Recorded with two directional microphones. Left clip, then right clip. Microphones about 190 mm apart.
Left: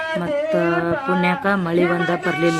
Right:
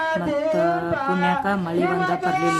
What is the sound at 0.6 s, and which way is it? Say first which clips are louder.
A woman's voice: left 1 dB; 15° left (ahead or behind).